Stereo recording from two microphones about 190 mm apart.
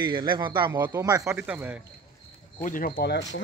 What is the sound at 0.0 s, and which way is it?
Speech, 25° right (ahead or behind).